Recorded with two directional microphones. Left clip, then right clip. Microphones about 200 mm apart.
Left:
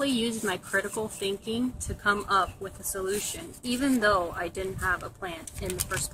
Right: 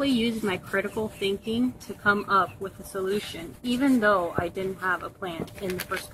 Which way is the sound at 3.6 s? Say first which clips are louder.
Right 2 dB; 35° right (ahead or behind).